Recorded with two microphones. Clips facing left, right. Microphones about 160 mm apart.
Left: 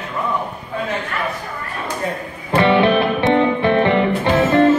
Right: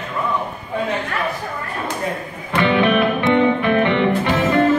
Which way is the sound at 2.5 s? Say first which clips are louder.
Left 2 dB; 30° left (ahead or behind).